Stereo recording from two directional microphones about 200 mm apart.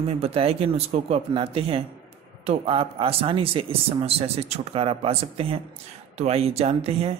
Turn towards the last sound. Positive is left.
turn(degrees=-30)  # may be behind; listen again after turning